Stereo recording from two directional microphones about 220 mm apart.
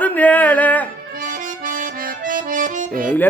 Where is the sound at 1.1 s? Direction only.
40° right (ahead or behind).